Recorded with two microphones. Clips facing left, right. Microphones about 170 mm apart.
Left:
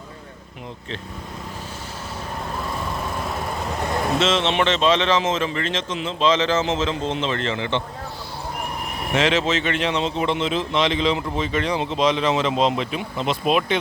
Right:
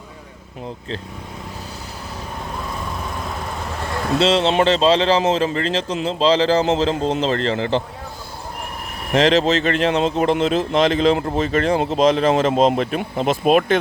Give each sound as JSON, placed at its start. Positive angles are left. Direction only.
{"t": 4.2, "sound": "speech", "side_deg": -35}
{"t": 9.1, "sound": "speech", "side_deg": -40}